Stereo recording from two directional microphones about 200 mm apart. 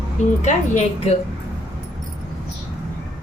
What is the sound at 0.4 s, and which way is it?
Speech, 35° left (ahead or behind).